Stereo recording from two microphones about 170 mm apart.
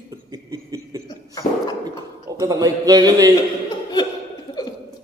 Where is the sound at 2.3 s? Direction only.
20° right (ahead or behind).